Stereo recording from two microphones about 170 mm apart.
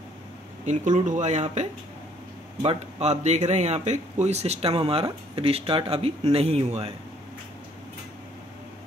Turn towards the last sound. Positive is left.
turn(degrees=-35)  # may be behind; listen again after turning